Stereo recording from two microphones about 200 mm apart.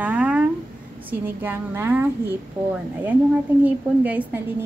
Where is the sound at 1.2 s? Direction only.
10° right (ahead or behind).